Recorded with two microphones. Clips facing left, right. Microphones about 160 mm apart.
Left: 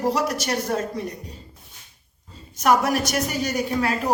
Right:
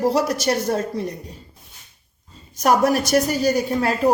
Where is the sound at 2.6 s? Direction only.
40° right (ahead or behind).